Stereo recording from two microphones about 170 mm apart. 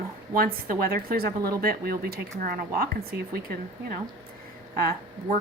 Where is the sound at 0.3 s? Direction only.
60° right (ahead or behind).